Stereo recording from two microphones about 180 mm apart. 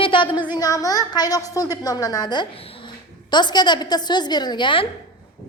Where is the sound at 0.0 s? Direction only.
30° left (ahead or behind).